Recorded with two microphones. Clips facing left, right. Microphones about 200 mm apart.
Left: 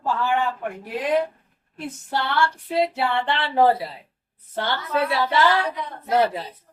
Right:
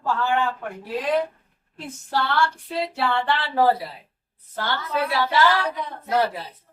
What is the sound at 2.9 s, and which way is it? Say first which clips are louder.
Speech: even; 20° left (ahead or behind).